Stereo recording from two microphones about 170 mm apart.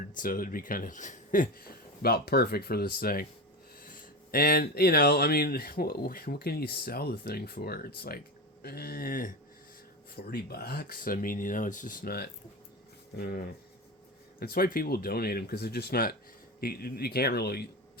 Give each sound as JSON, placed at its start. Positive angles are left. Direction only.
{"t": 0.2, "sound": "speech", "side_deg": 55}
{"t": 4.3, "sound": "speech", "side_deg": 60}